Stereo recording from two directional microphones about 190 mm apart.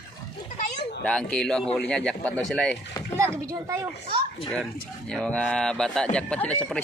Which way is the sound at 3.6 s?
15° right (ahead or behind).